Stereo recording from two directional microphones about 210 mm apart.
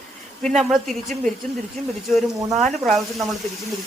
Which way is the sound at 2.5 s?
Centre (ahead or behind).